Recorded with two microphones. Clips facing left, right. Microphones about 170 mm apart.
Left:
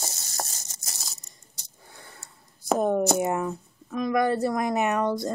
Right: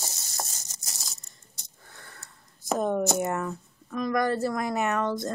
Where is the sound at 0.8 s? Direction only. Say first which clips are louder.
Left 2 dB; centre (ahead or behind).